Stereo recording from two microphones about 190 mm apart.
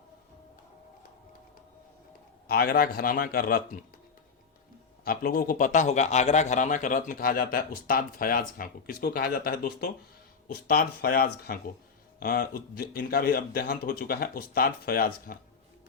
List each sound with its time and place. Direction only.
2.5 s a man's voice: 55° left (ahead or behind)
5.0 s a man's voice: 50° left (ahead or behind)